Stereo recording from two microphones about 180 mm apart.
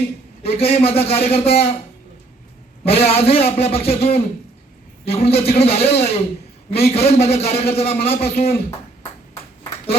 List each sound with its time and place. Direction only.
0.4 s a man's voice: 35° left (ahead or behind)
2.8 s a man's voice: 35° left (ahead or behind)